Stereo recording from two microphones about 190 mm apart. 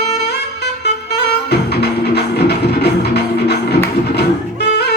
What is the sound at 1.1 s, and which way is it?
Music, 60° left (ahead or behind).